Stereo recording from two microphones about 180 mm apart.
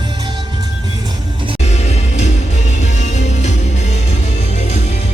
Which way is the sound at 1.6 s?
40° left (ahead or behind).